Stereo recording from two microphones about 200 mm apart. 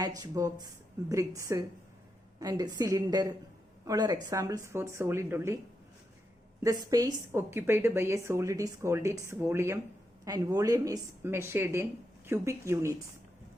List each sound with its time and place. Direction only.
0.0 s a woman's voice: 20° right (ahead or behind)
6.6 s a woman's voice: 20° right (ahead or behind)